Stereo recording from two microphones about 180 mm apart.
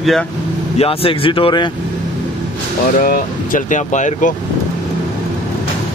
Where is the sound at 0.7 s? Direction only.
30° left (ahead or behind).